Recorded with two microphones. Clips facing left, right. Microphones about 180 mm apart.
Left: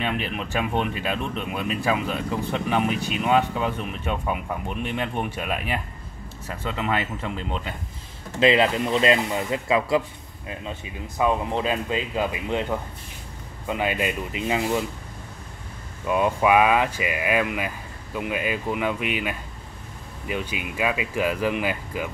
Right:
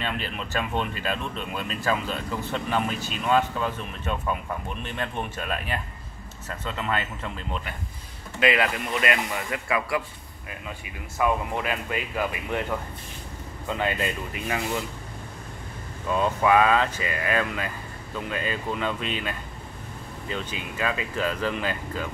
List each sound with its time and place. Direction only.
0.0 s speech: 10° left (ahead or behind)
16.1 s speech: 15° left (ahead or behind)